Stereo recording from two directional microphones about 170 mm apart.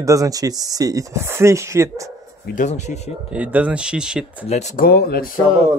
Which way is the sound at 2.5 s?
45° left (ahead or behind).